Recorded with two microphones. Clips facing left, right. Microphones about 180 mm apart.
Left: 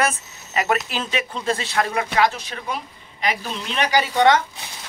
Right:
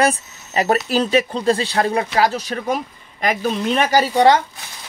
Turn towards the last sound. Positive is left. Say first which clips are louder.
# right 3 dB
turn(degrees=-35)  # may be behind; listen again after turning